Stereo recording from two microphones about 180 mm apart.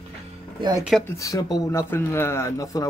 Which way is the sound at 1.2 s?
20° left (ahead or behind).